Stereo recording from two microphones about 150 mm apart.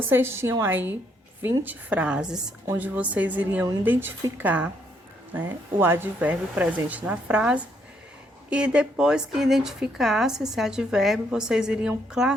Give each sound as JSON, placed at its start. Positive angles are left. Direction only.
{"t": 0.1, "sound": "a woman's voice", "side_deg": -15}